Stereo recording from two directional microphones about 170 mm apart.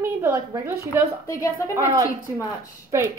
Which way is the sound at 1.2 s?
20° left (ahead or behind).